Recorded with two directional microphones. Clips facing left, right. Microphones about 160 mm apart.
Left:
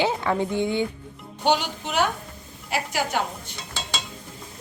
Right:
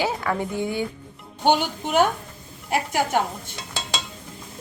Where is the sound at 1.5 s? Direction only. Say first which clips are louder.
Right 3 dB; 50° right (ahead or behind).